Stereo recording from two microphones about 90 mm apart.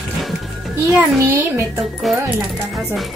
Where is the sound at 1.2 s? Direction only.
30° right (ahead or behind).